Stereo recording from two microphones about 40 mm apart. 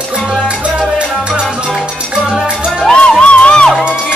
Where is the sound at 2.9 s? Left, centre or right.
Left.